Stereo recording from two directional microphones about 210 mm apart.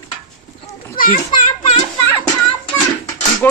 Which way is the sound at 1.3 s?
20° left (ahead or behind).